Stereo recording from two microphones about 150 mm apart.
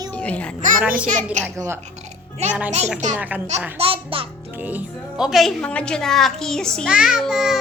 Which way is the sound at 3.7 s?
40° right (ahead or behind).